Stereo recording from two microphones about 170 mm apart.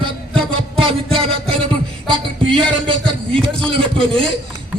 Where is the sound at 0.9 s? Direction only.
35° right (ahead or behind).